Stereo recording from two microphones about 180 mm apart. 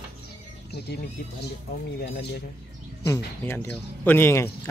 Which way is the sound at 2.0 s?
65° left (ahead or behind).